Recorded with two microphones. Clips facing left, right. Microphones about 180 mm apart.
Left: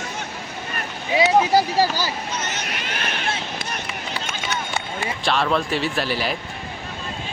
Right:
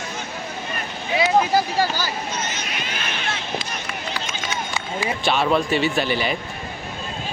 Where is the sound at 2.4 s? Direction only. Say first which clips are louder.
Even; 65° left (ahead or behind).